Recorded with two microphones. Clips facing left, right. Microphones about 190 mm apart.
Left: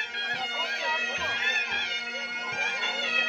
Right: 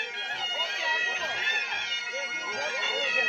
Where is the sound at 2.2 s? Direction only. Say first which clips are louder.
Right 2 dB; 60° left (ahead or behind).